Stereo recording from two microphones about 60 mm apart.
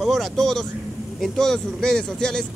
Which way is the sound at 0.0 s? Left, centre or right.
Centre.